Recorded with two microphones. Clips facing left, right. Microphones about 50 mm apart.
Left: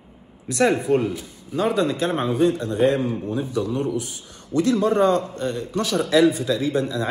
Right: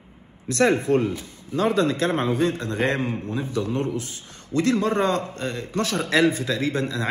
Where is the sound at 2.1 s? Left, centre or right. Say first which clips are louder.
Left 2 dB; right.